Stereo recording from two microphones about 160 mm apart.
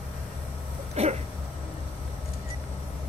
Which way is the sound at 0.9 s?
45° right (ahead or behind).